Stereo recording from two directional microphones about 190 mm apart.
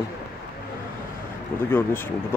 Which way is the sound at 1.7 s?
10° left (ahead or behind).